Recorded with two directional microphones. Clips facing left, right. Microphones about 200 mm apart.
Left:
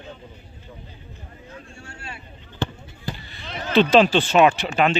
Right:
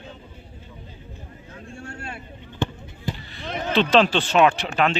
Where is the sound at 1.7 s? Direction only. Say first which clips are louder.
Right 4 dB; 55° right (ahead or behind).